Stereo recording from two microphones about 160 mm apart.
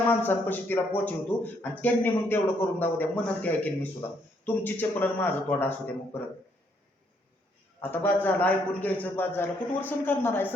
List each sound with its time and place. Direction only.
0.1 s a man's voice: 10° left (ahead or behind)
7.8 s a man's voice: 10° left (ahead or behind)